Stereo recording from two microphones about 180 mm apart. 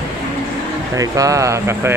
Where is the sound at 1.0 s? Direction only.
20° right (ahead or behind).